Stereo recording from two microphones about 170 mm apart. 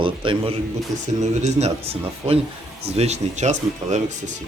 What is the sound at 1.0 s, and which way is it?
A man's voice, 45° right (ahead or behind).